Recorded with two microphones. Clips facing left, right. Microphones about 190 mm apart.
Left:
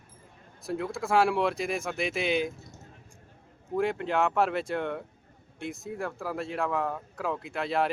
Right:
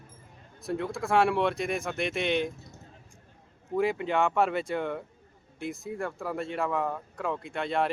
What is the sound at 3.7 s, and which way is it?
Speech, centre (ahead or behind).